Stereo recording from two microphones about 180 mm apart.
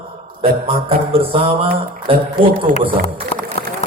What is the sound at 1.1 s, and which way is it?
Music, 30° right (ahead or behind).